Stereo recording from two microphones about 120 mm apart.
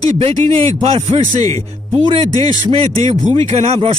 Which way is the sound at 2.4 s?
55° right (ahead or behind).